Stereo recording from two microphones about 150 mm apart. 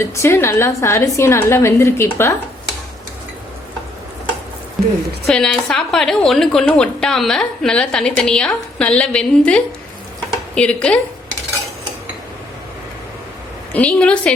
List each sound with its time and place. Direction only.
0.0 s a woman's voice: 15° left (ahead or behind)
4.8 s a woman's voice: centre (ahead or behind)
13.7 s a woman's voice: 10° left (ahead or behind)